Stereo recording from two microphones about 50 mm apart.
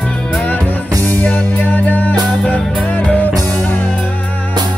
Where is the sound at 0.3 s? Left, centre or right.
Left.